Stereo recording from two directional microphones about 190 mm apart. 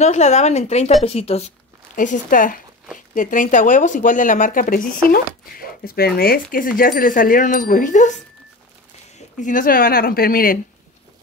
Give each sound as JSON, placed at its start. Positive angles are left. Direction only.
{"t": 0.0, "sound": "speech", "side_deg": 35}
{"t": 2.0, "sound": "speech", "side_deg": 45}
{"t": 9.4, "sound": "speech", "side_deg": 45}